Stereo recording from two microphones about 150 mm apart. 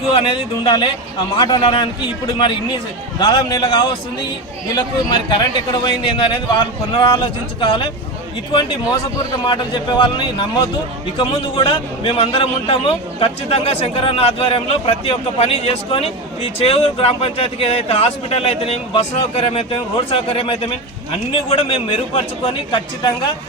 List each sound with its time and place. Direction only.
0.1 s a man's voice: 35° left (ahead or behind)
9.5 s a man's voice: 30° left (ahead or behind)